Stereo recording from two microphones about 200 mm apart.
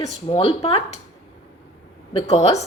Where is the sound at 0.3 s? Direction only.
30° left (ahead or behind).